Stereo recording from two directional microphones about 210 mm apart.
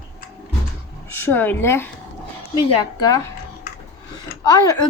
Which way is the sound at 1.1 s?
10° left (ahead or behind).